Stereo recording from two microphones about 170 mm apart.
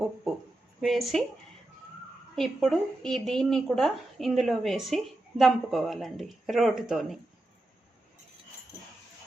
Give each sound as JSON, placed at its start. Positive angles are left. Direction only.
{"t": 0.8, "sound": "a woman's voice", "side_deg": 0}
{"t": 2.3, "sound": "a woman's voice", "side_deg": 0}